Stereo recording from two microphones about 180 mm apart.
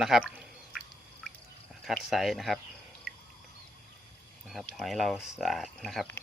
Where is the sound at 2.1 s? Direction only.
Centre (ahead or behind).